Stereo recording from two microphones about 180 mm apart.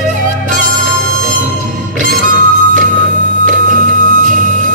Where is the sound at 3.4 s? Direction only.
45° right (ahead or behind).